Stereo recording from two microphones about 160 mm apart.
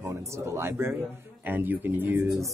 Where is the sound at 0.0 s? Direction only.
15° right (ahead or behind).